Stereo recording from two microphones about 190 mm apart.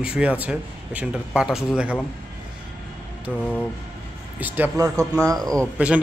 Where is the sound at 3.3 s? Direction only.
5° right (ahead or behind).